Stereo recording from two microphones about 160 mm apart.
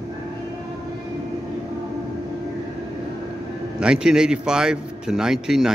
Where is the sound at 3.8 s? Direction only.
5° right (ahead or behind).